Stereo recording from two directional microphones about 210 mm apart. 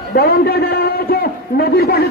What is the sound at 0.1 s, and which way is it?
A man's voice, 45° left (ahead or behind).